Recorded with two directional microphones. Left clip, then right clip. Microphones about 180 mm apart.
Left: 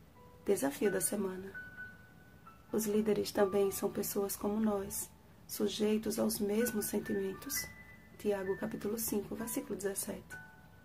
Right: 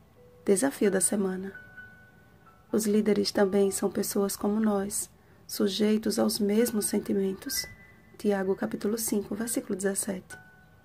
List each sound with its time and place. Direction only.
0.4 s speech: 30° right (ahead or behind)
2.7 s speech: 30° right (ahead or behind)